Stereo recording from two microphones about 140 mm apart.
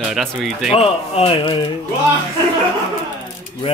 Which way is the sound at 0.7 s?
40° left (ahead or behind).